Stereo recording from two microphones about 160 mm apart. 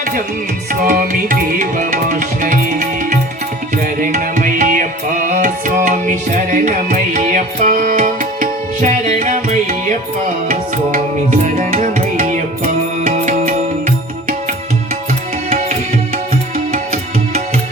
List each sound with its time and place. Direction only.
0.7 s tabla: 60° right (ahead or behind)
4.0 s music: 55° right (ahead or behind)
10.5 s tabla: 55° right (ahead or behind)
13.1 s music: 50° right (ahead or behind)
15.4 s music: 50° right (ahead or behind)